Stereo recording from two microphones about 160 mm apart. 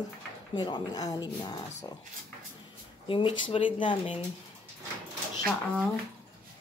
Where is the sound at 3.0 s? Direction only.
30° left (ahead or behind).